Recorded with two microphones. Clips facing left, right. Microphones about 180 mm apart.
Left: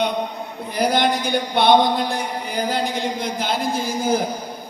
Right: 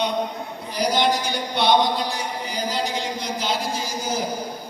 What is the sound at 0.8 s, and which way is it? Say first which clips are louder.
A man's voice: left 2 dB; 55° left (ahead or behind).